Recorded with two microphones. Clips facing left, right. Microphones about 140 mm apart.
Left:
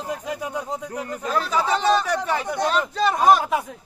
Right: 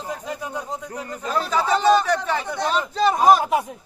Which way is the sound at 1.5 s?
5° left (ahead or behind).